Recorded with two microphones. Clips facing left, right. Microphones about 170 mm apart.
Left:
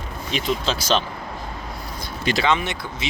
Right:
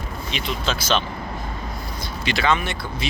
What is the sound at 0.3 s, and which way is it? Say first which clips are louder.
Speech: left 3 dB; 40° left (ahead or behind).